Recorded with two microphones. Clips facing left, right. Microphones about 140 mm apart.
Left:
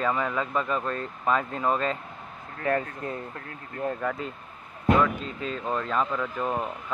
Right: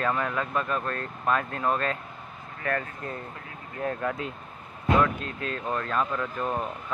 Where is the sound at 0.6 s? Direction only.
15° left (ahead or behind).